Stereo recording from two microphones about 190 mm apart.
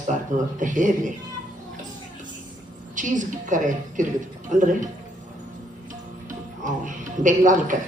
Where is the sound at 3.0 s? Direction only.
40° right (ahead or behind).